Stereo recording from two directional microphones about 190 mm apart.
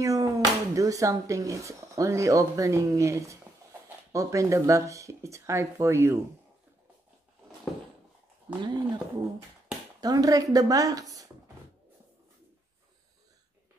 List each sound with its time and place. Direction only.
0.0 s speech: 15° right (ahead or behind)
8.6 s a woman's voice: 20° right (ahead or behind)